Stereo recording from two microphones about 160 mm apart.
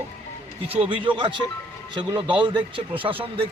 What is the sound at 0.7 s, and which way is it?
A man's voice, 35° right (ahead or behind).